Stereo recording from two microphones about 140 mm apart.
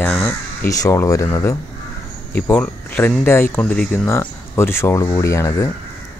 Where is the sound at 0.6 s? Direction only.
25° left (ahead or behind).